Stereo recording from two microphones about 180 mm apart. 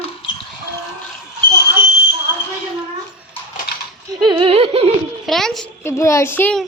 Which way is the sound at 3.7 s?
60° left (ahead or behind).